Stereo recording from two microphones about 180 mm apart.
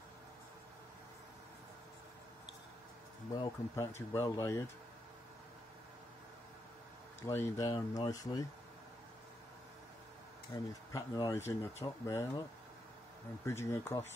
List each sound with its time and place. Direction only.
3.3 s speech: 15° left (ahead or behind)
7.2 s speech: 15° left (ahead or behind)
10.5 s speech: 20° left (ahead or behind)
13.5 s speech: 15° left (ahead or behind)